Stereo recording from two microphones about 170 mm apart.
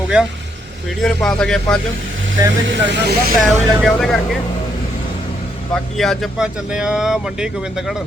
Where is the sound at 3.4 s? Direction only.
Centre (ahead or behind).